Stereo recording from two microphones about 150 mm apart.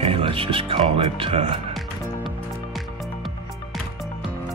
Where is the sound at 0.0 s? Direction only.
35° right (ahead or behind).